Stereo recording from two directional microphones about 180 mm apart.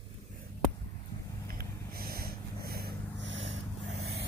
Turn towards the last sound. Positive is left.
turn(degrees=-90)